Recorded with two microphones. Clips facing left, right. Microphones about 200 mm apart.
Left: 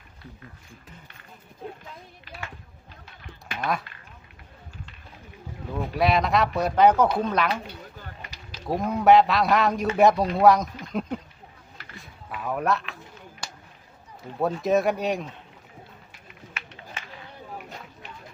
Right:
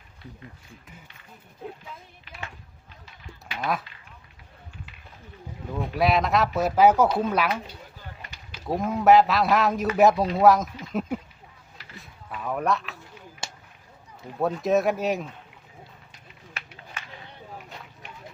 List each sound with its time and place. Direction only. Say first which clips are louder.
3.6 s speech: even; centre (ahead or behind)
5.7 s speech: even; centre (ahead or behind)
8.6 s speech: even; centre (ahead or behind)
11.9 s a sound: left 1 dB; centre (ahead or behind)
14.3 s speech: even; centre (ahead or behind)
16.6 s a sound: even; 35° right (ahead or behind)